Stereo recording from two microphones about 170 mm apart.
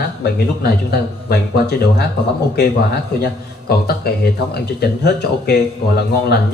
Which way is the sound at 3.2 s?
65° left (ahead or behind).